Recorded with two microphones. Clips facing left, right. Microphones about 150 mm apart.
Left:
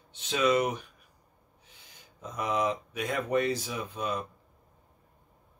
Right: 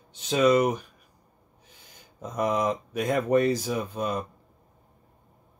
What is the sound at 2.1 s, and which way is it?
Speech, 45° right (ahead or behind).